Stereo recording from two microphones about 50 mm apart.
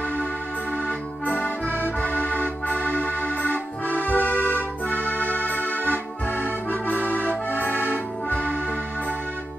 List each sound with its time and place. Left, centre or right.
0.8 s music: left